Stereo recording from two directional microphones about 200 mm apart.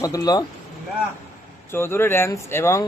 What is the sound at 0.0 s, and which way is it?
Speech, 20° left (ahead or behind).